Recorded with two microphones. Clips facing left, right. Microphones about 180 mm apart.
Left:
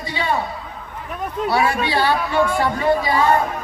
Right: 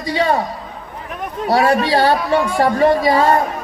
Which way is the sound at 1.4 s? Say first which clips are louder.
Right 5 dB; 40° right (ahead or behind).